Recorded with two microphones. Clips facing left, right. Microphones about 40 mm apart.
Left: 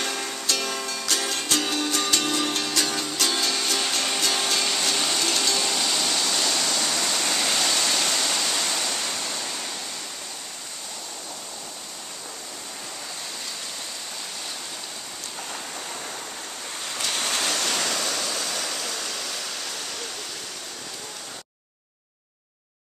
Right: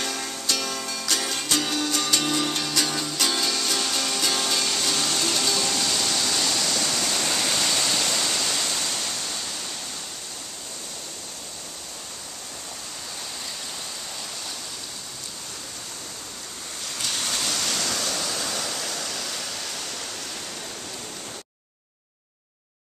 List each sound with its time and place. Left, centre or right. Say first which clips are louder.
0.0 s music: left 1 dB; centre
5.3 s a sound: even; centre
8.3 s waterfall: left 1 dB; centre
8.6 s waves: left 1 dB; left
17.0 s a sound: left 2 dB; centre
17.4 s waves: left 2 dB; centre
18.2 s waterfall: even; centre